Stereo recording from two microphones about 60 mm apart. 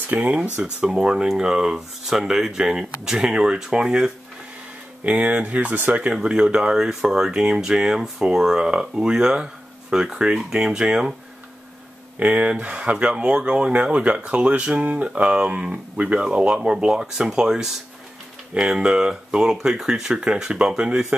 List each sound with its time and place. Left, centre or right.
0.0 s speech: right
6.1 s speech: centre
12.2 s speech: right